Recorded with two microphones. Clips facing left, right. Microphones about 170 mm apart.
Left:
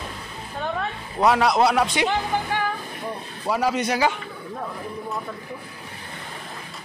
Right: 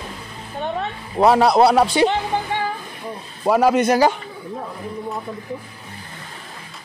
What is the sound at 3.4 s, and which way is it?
Speech, 55° right (ahead or behind).